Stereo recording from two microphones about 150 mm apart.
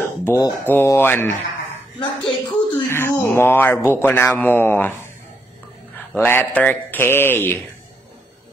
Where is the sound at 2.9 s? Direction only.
15° left (ahead or behind).